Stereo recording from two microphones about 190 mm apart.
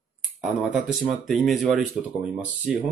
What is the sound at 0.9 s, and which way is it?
Speech, centre (ahead or behind).